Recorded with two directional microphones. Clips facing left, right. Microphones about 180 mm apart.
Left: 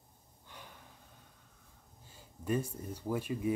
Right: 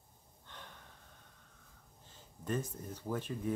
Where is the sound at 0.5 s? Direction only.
10° left (ahead or behind).